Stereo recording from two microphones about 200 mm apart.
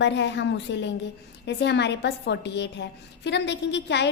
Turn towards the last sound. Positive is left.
turn(degrees=60)  # may be behind; listen again after turning